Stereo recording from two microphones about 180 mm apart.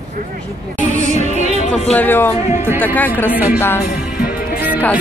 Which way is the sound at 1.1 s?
40° right (ahead or behind).